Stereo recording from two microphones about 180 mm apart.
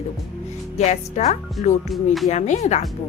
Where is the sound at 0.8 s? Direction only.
40° left (ahead or behind).